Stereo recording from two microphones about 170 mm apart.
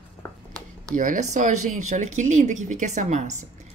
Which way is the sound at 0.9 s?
50° right (ahead or behind).